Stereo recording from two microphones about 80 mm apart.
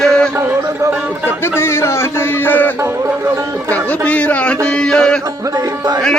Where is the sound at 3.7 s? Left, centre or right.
Centre.